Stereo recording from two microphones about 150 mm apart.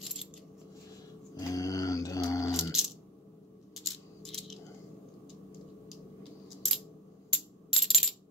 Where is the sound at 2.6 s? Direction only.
5° right (ahead or behind).